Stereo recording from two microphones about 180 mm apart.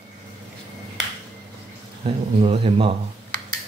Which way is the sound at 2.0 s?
30° right (ahead or behind).